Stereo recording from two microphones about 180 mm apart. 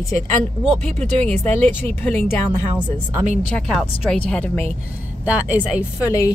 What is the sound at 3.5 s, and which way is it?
Speech, 5° left (ahead or behind).